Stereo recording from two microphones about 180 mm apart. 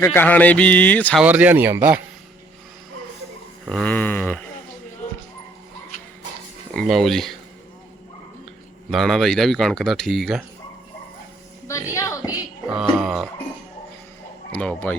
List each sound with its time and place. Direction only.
0.0 s a man's voice: 10° left (ahead or behind)
1.2 s a man's voice: 10° right (ahead or behind)
3.7 s a man's voice: 5° left (ahead or behind)
6.7 s speech: centre (ahead or behind)
8.9 s speech: centre (ahead or behind)
11.7 s a woman's voice: 15° left (ahead or behind)
12.7 s speech: centre (ahead or behind)
14.5 s a man's voice: 5° left (ahead or behind)